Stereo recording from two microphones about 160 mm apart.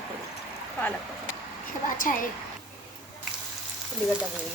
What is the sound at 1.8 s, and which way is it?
Speech, 55° left (ahead or behind).